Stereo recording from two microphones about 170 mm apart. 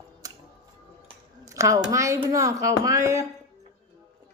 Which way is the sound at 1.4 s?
20° right (ahead or behind).